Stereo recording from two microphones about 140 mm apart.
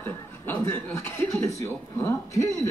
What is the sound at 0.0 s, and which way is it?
A man's voice, 15° left (ahead or behind).